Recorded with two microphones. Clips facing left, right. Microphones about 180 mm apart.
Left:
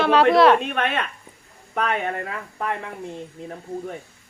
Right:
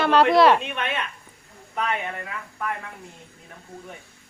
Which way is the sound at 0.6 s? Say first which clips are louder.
Left 4 dB; 55° left (ahead or behind).